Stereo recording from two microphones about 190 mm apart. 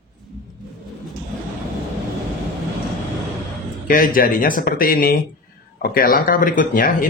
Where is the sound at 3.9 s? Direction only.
45° left (ahead or behind).